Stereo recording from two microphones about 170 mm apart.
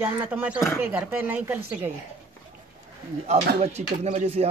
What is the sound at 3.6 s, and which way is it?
Speech, 40° right (ahead or behind).